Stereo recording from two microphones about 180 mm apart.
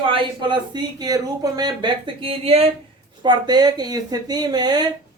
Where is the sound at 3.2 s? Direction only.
25° right (ahead or behind).